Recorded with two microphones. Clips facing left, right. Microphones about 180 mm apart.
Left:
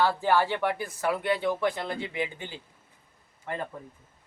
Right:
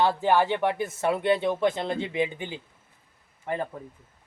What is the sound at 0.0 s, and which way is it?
Speech, 20° right (ahead or behind).